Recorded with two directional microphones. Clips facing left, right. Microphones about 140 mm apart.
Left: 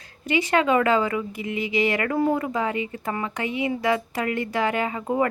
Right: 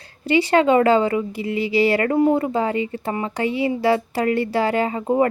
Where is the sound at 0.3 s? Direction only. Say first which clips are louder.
Right 5 dB; 30° right (ahead or behind).